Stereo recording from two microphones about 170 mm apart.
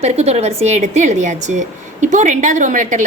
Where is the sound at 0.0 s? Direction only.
40° right (ahead or behind).